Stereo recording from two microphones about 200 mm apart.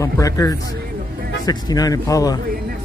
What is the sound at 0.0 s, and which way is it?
A man's voice, 15° left (ahead or behind).